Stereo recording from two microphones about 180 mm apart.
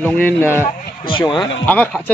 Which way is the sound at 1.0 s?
30° left (ahead or behind).